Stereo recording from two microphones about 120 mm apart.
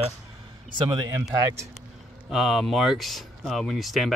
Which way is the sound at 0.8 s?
35° right (ahead or behind).